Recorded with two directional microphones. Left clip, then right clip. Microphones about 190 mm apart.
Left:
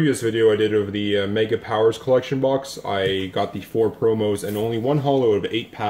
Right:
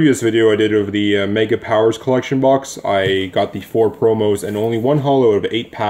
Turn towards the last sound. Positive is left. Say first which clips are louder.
# right 6 dB
turn(degrees=-40)  # may be behind; listen again after turning